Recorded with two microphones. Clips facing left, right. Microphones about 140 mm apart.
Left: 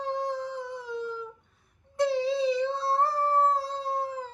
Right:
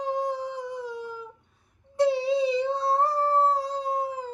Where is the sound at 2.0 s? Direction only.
15° right (ahead or behind).